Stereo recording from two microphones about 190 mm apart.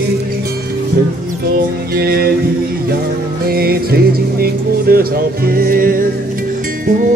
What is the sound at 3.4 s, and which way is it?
Music, 55° right (ahead or behind).